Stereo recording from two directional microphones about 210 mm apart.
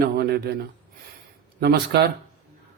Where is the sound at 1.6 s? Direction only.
50° right (ahead or behind).